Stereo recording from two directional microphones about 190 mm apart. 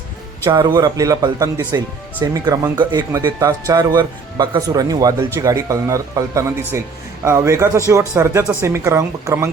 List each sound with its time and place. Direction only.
0.4 s speech: 20° right (ahead or behind)